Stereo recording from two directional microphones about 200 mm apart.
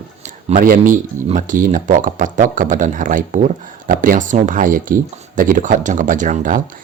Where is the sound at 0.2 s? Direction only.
40° right (ahead or behind).